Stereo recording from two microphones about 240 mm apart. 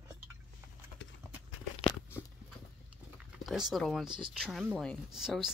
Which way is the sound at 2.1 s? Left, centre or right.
Centre.